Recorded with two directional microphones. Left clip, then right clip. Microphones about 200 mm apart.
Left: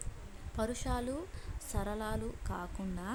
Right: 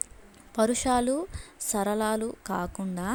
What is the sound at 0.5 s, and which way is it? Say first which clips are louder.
A woman's voice: right 13 dB; 30° right (ahead or behind).